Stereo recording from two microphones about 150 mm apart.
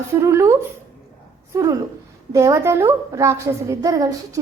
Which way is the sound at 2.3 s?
20° right (ahead or behind).